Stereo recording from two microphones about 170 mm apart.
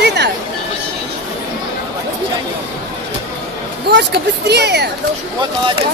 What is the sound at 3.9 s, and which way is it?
Speech, 85° right.